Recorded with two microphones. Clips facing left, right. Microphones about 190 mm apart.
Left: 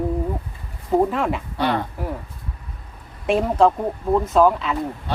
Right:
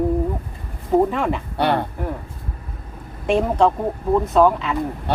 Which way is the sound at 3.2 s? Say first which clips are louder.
Even; centre (ahead or behind).